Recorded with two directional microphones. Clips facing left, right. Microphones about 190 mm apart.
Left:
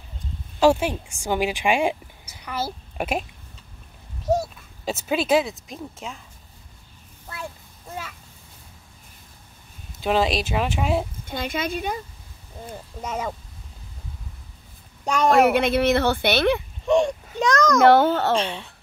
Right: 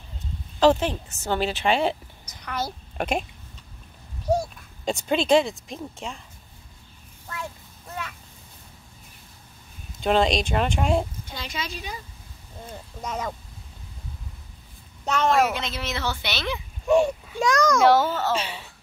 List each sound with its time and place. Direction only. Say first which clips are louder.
0.6 s a woman's voice: left 1 dB; 10° left (ahead or behind)
4.3 s speech: left 1 dB; 5° left (ahead or behind)
9.9 s speech: right 1 dB; 5° left (ahead or behind)
11.2 s a woman's voice: left 7 dB; 55° left (ahead or behind)
13.0 s speech: left 2 dB; 10° left (ahead or behind)
15.4 s speech: left 9 dB; 60° left (ahead or behind)
16.8 s a child's voice: right 1 dB; 5° right (ahead or behind)
17.8 s speech: left 6 dB; 60° left (ahead or behind)
18.3 s speech: left 4 dB; 5° right (ahead or behind)